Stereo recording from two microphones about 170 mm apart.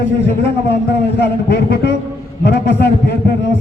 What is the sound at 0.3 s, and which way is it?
A man's voice, 85° left.